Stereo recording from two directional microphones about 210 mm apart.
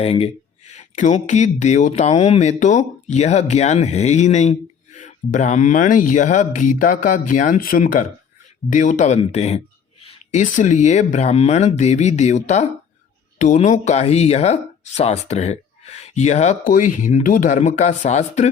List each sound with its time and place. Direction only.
0.0 s speech: 30° left (ahead or behind)